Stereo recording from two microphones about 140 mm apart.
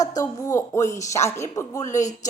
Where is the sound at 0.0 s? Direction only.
25° left (ahead or behind).